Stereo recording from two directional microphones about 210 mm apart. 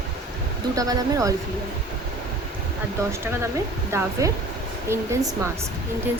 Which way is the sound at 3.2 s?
15° right (ahead or behind).